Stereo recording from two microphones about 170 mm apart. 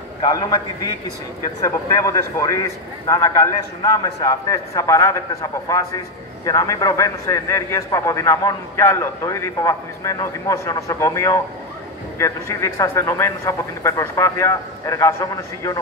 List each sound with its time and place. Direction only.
0.2 s a man's voice: 25° left (ahead or behind)
1.6 s a man's voice: 20° left (ahead or behind)